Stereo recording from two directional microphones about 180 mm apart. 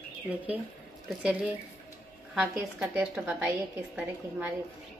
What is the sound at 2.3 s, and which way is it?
A woman's voice, 10° right (ahead or behind).